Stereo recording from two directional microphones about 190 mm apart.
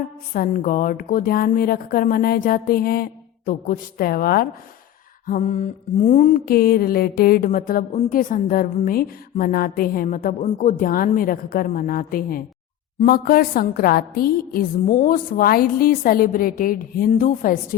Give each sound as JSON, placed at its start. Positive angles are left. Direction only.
{"t": 0.3, "sound": "mantra", "side_deg": 45}